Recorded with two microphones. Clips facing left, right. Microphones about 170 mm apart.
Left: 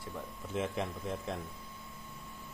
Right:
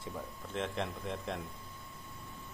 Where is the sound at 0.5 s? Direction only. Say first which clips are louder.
Left 2 dB; 5° left (ahead or behind).